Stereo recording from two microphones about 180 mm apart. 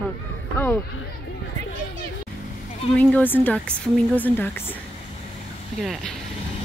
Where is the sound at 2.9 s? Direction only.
10° left (ahead or behind).